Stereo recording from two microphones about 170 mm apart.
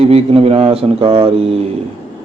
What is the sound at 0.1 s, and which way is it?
Speech, 35° right (ahead or behind).